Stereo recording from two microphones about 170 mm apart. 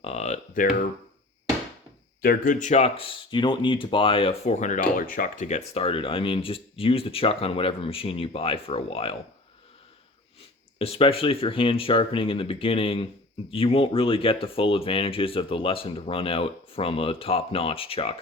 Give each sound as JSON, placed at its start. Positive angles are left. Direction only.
{"t": 0.0, "sound": "a sound", "side_deg": 40}
{"t": 2.2, "sound": "speech", "side_deg": 55}
{"t": 10.8, "sound": "speech", "side_deg": 35}